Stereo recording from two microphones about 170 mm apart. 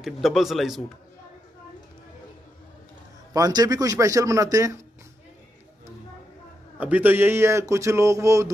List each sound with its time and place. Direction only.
0.0 s speech: centre (ahead or behind)
3.3 s a man's voice: 20° right (ahead or behind)
6.8 s a man's voice: 10° right (ahead or behind)